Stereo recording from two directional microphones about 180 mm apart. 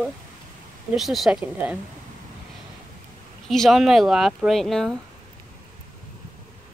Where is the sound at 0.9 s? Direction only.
Centre (ahead or behind).